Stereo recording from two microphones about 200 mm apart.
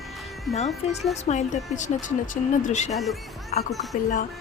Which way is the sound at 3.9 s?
40° left (ahead or behind).